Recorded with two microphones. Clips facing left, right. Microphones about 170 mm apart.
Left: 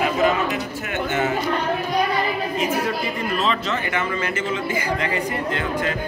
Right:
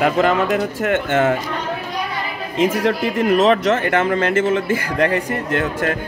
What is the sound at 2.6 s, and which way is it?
Speech, 90° right.